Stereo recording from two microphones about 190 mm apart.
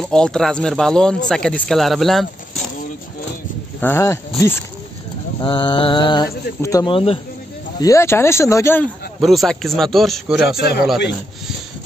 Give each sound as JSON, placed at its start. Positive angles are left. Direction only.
{"t": 0.0, "sound": "a man's voice", "side_deg": 5}
{"t": 3.8, "sound": "speech", "side_deg": 10}
{"t": 5.4, "sound": "mantra", "side_deg": 25}
{"t": 7.8, "sound": "speech", "side_deg": 15}
{"t": 9.2, "sound": "a man's voice", "side_deg": 0}